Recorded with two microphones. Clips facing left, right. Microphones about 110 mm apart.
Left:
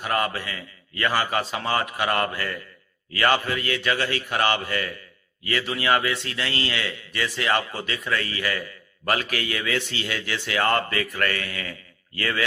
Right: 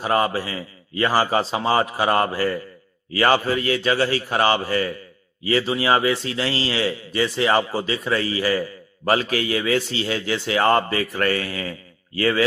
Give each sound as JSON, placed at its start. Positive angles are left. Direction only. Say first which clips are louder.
{"t": 0.0, "sound": "a man's voice", "louder": "right 5 dB", "side_deg": -25}